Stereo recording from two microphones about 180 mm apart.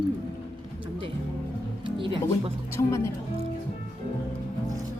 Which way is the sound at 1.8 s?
30° right (ahead or behind).